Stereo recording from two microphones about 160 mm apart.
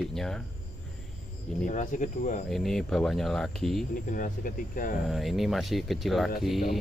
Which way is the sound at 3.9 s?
60° left (ahead or behind).